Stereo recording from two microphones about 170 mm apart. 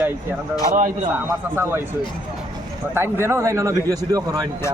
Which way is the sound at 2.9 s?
15° right (ahead or behind).